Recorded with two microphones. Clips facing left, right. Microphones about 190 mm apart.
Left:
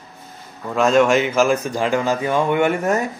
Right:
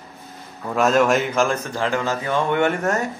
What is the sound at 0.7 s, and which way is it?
Speech, 5° right (ahead or behind).